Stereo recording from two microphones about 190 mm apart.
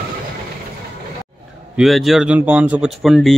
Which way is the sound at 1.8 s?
Centre (ahead or behind).